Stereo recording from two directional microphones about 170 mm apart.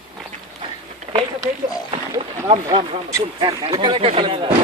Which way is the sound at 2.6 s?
25° right (ahead or behind).